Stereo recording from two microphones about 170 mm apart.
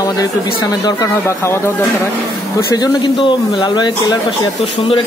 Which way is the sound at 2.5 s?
25° left (ahead or behind).